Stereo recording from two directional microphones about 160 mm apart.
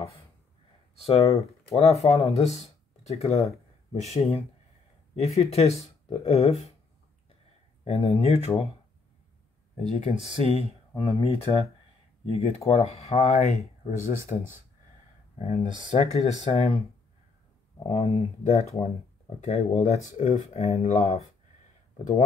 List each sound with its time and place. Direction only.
1.0 s speech: 40° left (ahead or behind)
7.8 s speech: 40° left (ahead or behind)
9.9 s speech: 45° left (ahead or behind)
11.0 s speech: 35° left (ahead or behind)
17.8 s speech: 40° left (ahead or behind)